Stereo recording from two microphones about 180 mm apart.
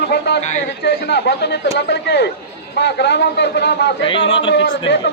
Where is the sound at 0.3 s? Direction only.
70° left (ahead or behind).